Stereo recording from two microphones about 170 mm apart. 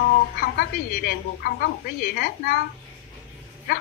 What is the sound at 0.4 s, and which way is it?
A woman's voice, 65° left (ahead or behind).